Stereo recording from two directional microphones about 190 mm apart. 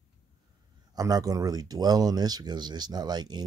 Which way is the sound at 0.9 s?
20° right (ahead or behind).